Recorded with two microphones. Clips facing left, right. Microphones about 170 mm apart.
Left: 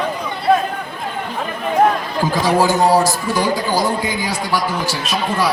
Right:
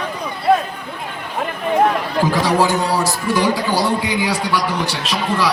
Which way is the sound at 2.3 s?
70° right (ahead or behind).